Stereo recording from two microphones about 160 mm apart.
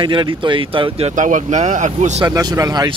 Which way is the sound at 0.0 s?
30° right (ahead or behind).